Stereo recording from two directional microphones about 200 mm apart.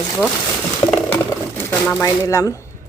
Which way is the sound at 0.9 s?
10° left (ahead or behind).